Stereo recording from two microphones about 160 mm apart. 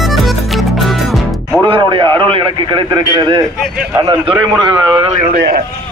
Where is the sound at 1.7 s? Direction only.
30° right (ahead or behind).